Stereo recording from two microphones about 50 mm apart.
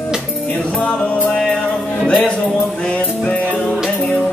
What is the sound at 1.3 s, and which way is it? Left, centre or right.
Music, centre.